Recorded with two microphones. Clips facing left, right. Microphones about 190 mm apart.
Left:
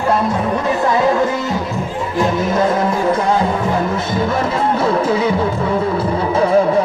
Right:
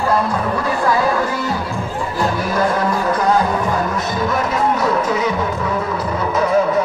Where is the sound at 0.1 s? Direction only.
25° left (ahead or behind).